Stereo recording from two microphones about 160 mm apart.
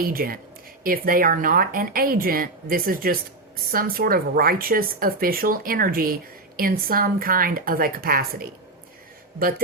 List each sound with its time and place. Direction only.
0.0 s a woman's voice: 65° right (ahead or behind)